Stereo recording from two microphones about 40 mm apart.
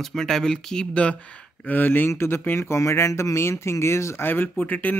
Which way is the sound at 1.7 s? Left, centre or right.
Left.